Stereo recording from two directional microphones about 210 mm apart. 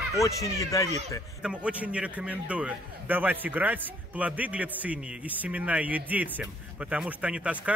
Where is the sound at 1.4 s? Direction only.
5° right (ahead or behind).